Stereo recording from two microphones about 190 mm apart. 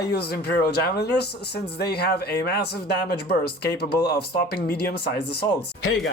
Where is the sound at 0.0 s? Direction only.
55° left (ahead or behind).